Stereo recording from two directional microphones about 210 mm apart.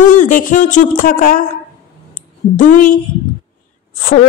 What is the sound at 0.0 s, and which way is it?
A woman's voice, 35° left (ahead or behind).